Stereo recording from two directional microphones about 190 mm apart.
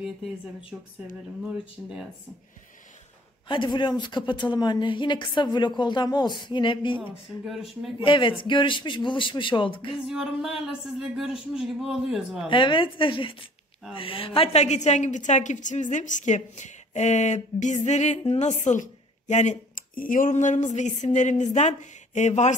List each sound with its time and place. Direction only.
0.0 s speech: 5° right (ahead or behind)
1.8 s speech: centre (ahead or behind)
3.4 s a woman's voice: 25° left (ahead or behind)
7.4 s speech: centre (ahead or behind)
8.0 s a woman's voice: 25° left (ahead or behind)
9.9 s speech: 5° right (ahead or behind)
12.4 s a woman's voice: 25° left (ahead or behind)